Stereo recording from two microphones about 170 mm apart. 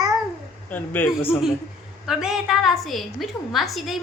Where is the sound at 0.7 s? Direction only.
10° left (ahead or behind).